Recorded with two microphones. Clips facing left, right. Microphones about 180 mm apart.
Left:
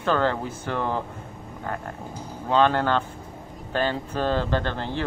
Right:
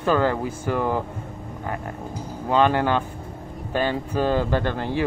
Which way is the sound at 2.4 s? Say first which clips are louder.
Right 1 dB; 10° right (ahead or behind).